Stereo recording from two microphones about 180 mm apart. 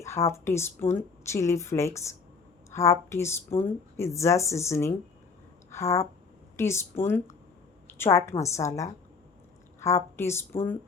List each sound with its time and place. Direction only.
0.0 s a woman's voice: 15° left (ahead or behind)